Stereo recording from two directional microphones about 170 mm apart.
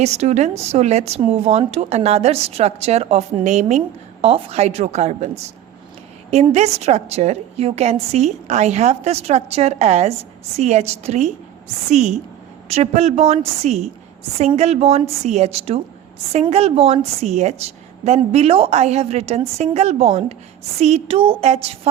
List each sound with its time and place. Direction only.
0.0 s a woman's voice: 40° right (ahead or behind)